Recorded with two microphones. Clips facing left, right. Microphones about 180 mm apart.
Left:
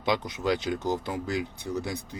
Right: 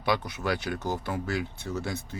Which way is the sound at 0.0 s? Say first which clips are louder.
Left 1 dB; 20° left (ahead or behind).